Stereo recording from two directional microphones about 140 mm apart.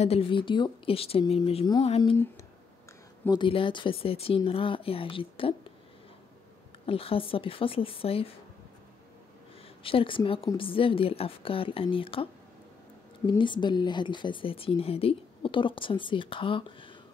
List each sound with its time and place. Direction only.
0.0 s speech: 45° left (ahead or behind)
3.3 s speech: 35° left (ahead or behind)
6.9 s speech: 40° left (ahead or behind)
9.8 s speech: 40° left (ahead or behind)
13.3 s speech: 35° left (ahead or behind)